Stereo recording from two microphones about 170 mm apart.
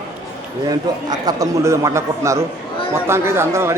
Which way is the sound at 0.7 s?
20° right (ahead or behind).